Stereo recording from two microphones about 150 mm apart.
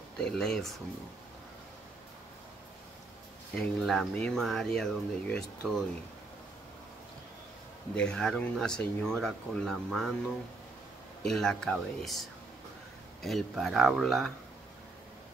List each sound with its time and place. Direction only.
0.2 s speech: 5° left (ahead or behind)
3.5 s speech: centre (ahead or behind)
7.9 s speech: 5° left (ahead or behind)
11.2 s speech: 5° left (ahead or behind)